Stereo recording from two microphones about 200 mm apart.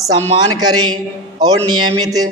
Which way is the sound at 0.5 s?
20° right (ahead or behind).